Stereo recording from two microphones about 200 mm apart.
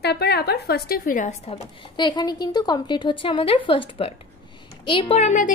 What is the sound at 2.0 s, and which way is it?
A woman's voice, 20° left (ahead or behind).